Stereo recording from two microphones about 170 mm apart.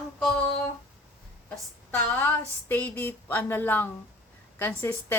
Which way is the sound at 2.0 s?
10° left (ahead or behind).